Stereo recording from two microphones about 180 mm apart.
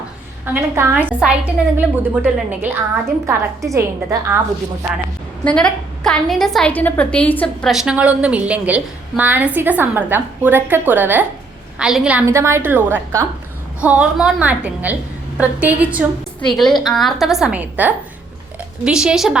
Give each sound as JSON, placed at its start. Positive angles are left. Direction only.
{"t": 0.4, "sound": "a woman's voice", "side_deg": -15}
{"t": 5.5, "sound": "a woman's voice", "side_deg": 5}